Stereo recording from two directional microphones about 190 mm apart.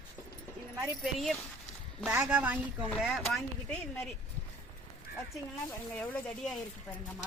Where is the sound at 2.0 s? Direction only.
10° right (ahead or behind).